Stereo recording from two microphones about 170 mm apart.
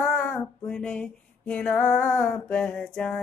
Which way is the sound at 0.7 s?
5° left (ahead or behind).